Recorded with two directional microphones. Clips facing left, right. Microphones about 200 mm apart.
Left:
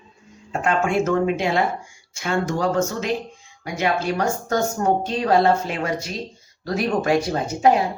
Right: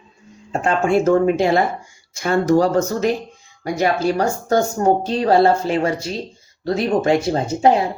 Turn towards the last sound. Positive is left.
turn(degrees=-25)  # may be behind; listen again after turning